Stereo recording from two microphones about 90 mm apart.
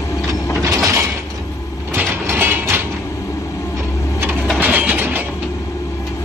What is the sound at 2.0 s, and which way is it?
Train, 25° right (ahead or behind).